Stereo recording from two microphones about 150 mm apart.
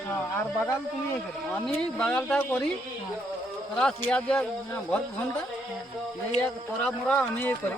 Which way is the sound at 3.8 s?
5° left (ahead or behind).